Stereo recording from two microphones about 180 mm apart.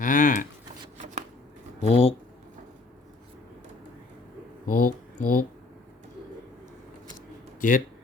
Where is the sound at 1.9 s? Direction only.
35° left (ahead or behind).